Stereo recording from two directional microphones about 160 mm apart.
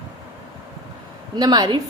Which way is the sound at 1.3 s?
25° right (ahead or behind).